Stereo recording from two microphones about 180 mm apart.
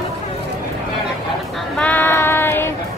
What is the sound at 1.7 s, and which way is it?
Child singing, 10° left (ahead or behind).